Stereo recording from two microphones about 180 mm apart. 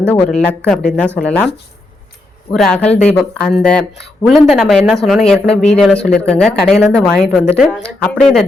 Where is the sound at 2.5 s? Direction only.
5° left (ahead or behind).